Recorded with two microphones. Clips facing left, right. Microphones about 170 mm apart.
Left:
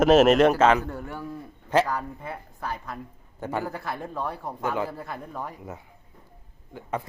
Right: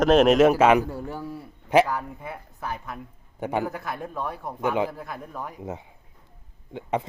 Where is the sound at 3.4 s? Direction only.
20° right (ahead or behind).